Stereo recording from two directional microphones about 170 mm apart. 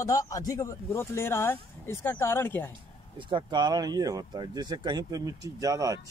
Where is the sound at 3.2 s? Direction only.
30° right (ahead or behind).